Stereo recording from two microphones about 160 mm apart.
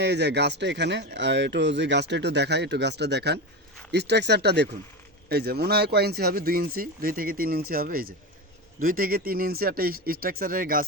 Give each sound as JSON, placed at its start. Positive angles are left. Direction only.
{"t": 0.0, "sound": "speech", "side_deg": -90}
{"t": 5.3, "sound": "speech", "side_deg": -80}